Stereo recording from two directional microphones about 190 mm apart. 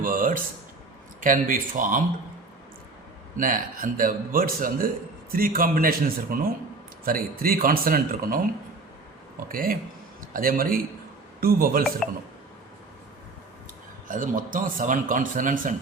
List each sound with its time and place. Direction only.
0.0 s a sound: 45° right (ahead or behind)
1.2 s speech: 45° right (ahead or behind)
3.3 s speech: 45° right (ahead or behind)
9.5 s speech: 50° right (ahead or behind)
12.0 s speech: centre (ahead or behind)
14.1 s speech: 45° right (ahead or behind)